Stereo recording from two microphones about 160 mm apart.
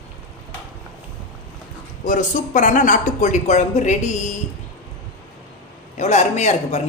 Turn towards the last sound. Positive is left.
turn(degrees=45)  # may be behind; listen again after turning